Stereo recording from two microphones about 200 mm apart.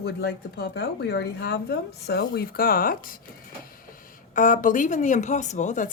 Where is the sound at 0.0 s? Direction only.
55° left (ahead or behind).